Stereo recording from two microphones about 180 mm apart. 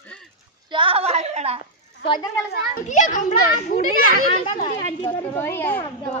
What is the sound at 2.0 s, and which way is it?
Children playing, 25° left (ahead or behind).